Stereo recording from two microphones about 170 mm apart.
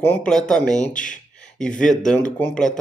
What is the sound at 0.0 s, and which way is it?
Speech, 10° left (ahead or behind).